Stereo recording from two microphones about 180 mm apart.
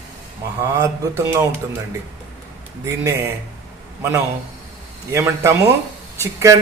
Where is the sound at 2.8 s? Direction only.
15° right (ahead or behind).